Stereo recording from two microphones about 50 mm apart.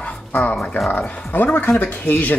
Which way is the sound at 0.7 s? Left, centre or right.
Left.